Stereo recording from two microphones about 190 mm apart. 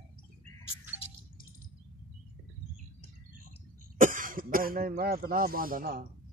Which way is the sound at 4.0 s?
45° right (ahead or behind).